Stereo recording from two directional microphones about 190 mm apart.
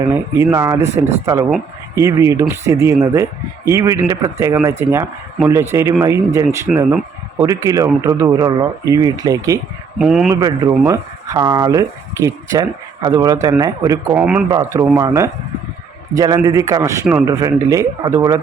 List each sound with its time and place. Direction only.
0.0 s speech: 20° right (ahead or behind)
10.0 s a man's voice: 5° right (ahead or behind)
10.4 s speech: 20° right (ahead or behind)
14.2 s a man's voice: 5° right (ahead or behind)
14.5 s speech: 20° right (ahead or behind)